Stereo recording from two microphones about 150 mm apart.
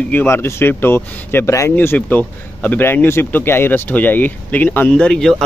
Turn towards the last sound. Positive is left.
turn(degrees=0)  # may be behind; listen again after turning